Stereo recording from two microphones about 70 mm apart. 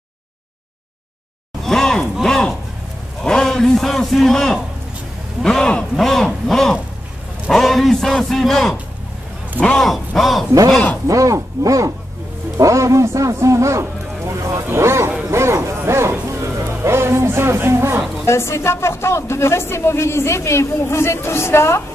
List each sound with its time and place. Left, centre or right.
1.6 s a sound: centre
3.2 s a man's voice: centre
9.8 s a man's voice: centre
11.1 s a man's voice: right
18.2 s speech: left